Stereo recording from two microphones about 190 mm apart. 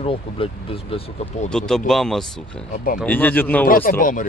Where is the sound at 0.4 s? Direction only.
30° left (ahead or behind).